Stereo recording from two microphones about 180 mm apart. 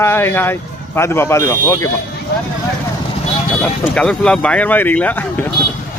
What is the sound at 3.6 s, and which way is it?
Speech, 5° left (ahead or behind).